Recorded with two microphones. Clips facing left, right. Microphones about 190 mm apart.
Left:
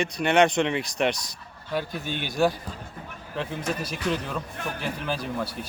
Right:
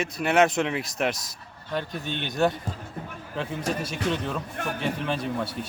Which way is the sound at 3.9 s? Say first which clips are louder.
Right 1 dB; 5° left (ahead or behind).